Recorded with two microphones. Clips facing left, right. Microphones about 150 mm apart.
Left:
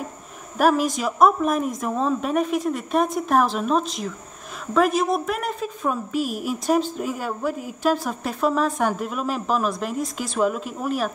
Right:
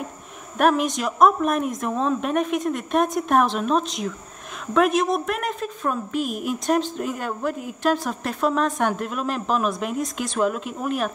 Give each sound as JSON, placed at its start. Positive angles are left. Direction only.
{"t": 0.6, "sound": "speech", "side_deg": 5}